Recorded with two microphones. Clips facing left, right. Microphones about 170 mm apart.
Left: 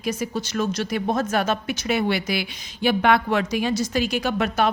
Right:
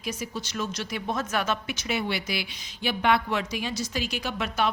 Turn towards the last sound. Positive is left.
turn(degrees=50)  # may be behind; listen again after turning